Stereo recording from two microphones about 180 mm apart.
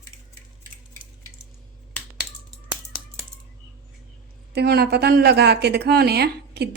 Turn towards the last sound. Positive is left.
turn(degrees=-65)  # may be behind; listen again after turning